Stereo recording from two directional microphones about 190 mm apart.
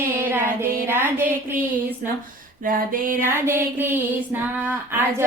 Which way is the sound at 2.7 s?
45° right (ahead or behind).